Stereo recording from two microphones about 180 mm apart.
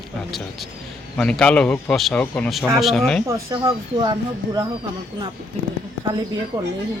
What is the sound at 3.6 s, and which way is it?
Speech, 25° right (ahead or behind).